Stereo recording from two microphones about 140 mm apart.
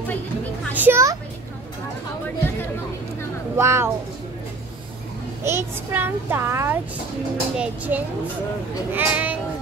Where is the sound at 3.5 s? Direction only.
20° right (ahead or behind).